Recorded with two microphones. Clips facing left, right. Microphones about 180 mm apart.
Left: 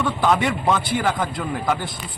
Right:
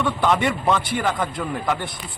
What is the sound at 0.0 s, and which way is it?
Speech, centre (ahead or behind).